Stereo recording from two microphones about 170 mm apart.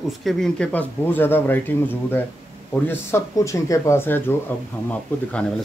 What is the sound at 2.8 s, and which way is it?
Speech, 15° left (ahead or behind).